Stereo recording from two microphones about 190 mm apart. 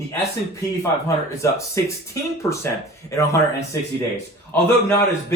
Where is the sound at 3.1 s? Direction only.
15° left (ahead or behind).